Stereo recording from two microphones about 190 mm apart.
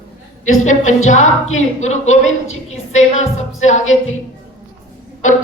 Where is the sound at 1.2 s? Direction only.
90° left.